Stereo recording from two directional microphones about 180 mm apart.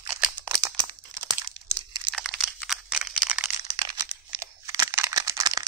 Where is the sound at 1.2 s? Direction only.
15° right (ahead or behind).